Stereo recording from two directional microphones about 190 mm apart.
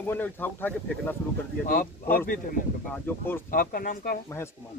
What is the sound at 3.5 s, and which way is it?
Speech, 50° left (ahead or behind).